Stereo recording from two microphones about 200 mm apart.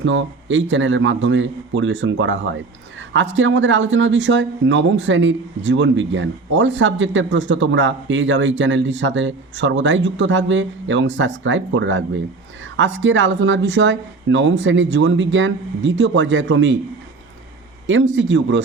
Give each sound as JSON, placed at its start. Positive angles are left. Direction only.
{"t": 0.0, "sound": "speech", "side_deg": -70}
{"t": 17.8, "sound": "speech", "side_deg": -70}